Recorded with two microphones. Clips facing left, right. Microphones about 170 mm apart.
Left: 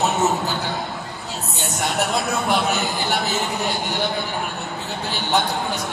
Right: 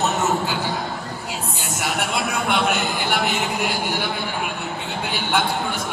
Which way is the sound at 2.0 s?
40° left (ahead or behind).